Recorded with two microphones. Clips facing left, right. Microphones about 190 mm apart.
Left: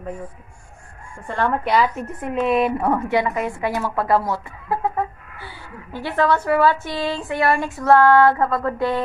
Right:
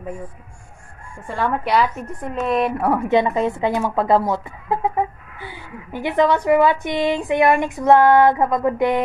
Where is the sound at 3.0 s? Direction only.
20° right (ahead or behind).